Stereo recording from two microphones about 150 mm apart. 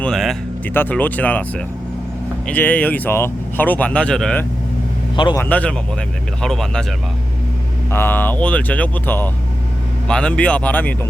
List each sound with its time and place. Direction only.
0.0 s music: centre (ahead or behind)
0.7 s speech: 10° left (ahead or behind)
5.1 s a man's voice: 30° left (ahead or behind)
5.4 s speech: 10° left (ahead or behind)
7.9 s speech: 15° left (ahead or behind)